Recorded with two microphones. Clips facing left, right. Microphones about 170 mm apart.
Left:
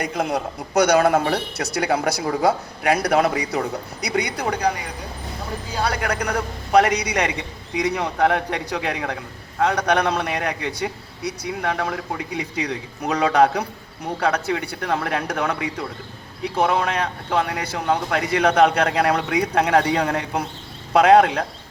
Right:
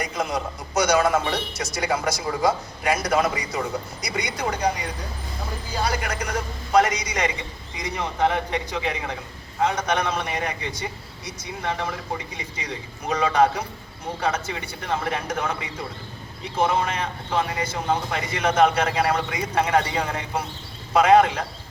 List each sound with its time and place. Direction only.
0.0 s speech: 60° left (ahead or behind)